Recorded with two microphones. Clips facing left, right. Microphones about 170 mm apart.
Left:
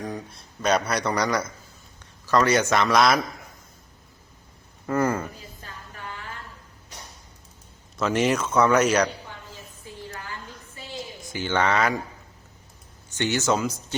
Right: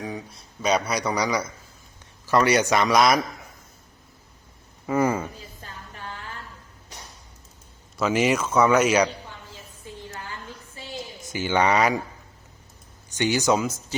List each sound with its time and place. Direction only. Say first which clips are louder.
0.0 s speech: even; 5° right (ahead or behind)
2.2 s speech: right 1 dB; 15° right (ahead or behind)
2.7 s speech: even; 5° right (ahead or behind)
4.9 s speech: right 1 dB; 10° right (ahead or behind)
7.9 s speech: right 1 dB; 5° right (ahead or behind)
11.3 s speech: right 2 dB; 15° right (ahead or behind)
13.1 s speech: right 2 dB; 15° right (ahead or behind)